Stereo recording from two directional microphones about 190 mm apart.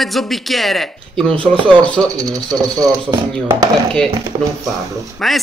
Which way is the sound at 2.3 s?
20° right (ahead or behind).